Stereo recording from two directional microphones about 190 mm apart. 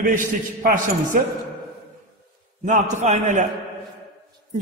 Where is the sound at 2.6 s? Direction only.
40° right (ahead or behind).